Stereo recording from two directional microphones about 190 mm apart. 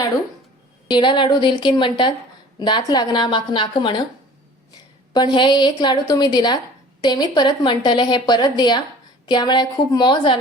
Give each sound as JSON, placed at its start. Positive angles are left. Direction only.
{"t": 0.9, "sound": "a woman's voice", "side_deg": 25}
{"t": 5.1, "sound": "a woman's voice", "side_deg": 25}